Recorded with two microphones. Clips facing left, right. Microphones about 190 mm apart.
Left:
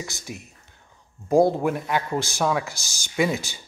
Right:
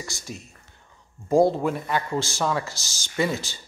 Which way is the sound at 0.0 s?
15° left (ahead or behind).